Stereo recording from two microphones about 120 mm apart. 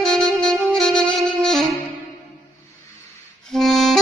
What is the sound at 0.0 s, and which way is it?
Saxophone, 5° left (ahead or behind).